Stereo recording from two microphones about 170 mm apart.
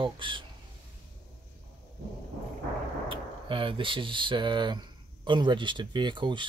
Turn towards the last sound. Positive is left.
turn(degrees=-25)  # may be behind; listen again after turning